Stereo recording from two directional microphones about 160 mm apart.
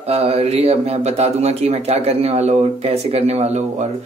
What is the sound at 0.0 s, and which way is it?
Speech, 40° right (ahead or behind).